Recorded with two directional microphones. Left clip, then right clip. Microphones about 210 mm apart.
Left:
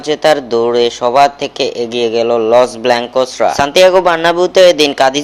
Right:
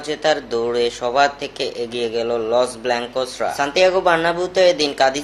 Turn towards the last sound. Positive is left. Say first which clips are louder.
# left 7 dB
turn(degrees=35)  # may be behind; listen again after turning